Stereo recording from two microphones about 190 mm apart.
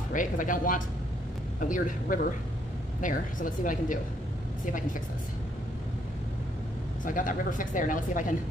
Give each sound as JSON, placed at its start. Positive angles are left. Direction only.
{"t": 0.1, "sound": "speech", "side_deg": 45}
{"t": 7.1, "sound": "speech", "side_deg": 45}